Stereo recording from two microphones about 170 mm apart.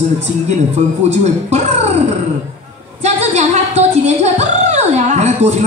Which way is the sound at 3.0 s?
40° right (ahead or behind).